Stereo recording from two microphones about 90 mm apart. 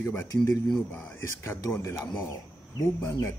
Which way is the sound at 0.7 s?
10° left (ahead or behind).